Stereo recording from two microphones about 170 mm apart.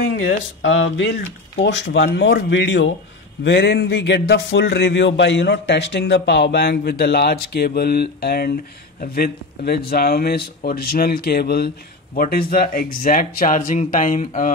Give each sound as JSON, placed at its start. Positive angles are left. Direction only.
{"t": 0.1, "sound": "speech", "side_deg": 90}
{"t": 12.2, "sound": "speech", "side_deg": 60}
{"t": 13.6, "sound": "speech", "side_deg": 40}